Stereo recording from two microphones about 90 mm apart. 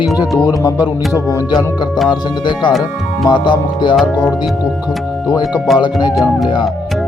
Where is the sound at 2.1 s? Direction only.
60° left (ahead or behind).